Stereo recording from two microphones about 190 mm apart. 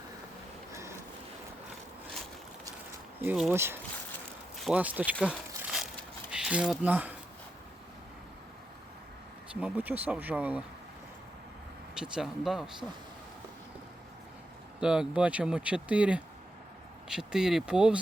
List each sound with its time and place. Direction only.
0.7 s a sound: 15° right (ahead or behind)
3.2 s speech: 10° right (ahead or behind)
5.2 s a sound: 5° right (ahead or behind)
6.3 s speech: 5° right (ahead or behind)
9.6 s speech: 10° right (ahead or behind)
11.9 s speech: 5° right (ahead or behind)
14.8 s speech: 5° right (ahead or behind)